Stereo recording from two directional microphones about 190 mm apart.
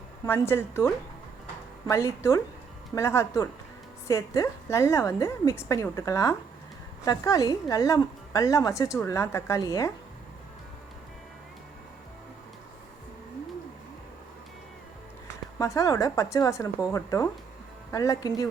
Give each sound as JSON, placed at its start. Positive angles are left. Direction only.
{"t": 0.3, "sound": "a woman's voice", "side_deg": 10}
{"t": 15.5, "sound": "a woman's voice", "side_deg": 15}